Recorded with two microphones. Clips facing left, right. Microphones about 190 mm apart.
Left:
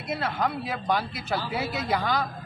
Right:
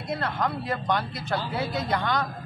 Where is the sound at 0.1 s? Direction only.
5° left (ahead or behind).